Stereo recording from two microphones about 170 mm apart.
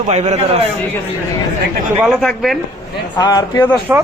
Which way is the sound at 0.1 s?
40° right (ahead or behind).